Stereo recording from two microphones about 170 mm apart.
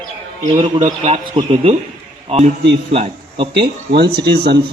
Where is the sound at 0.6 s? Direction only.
40° right (ahead or behind).